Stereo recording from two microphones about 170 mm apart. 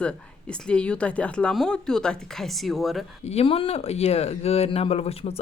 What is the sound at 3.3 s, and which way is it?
Speech, 35° left (ahead or behind).